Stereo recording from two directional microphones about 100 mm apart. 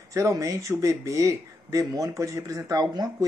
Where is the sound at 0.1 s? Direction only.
30° right (ahead or behind).